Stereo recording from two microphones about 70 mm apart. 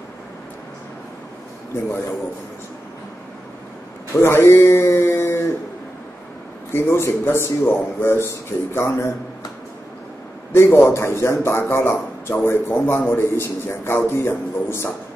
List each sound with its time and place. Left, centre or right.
4.1 s speech: left
6.7 s a man's voice: left
10.5 s a man's voice: left